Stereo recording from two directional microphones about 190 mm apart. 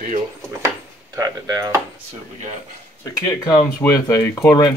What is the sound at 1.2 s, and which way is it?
Speech, 20° right (ahead or behind).